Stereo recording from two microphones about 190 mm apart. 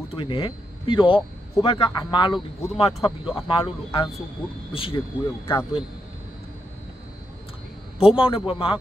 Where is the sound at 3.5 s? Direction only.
30° left (ahead or behind).